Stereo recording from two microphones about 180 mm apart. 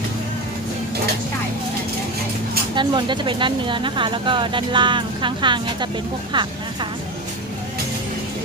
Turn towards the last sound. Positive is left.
turn(degrees=-25)  # may be behind; listen again after turning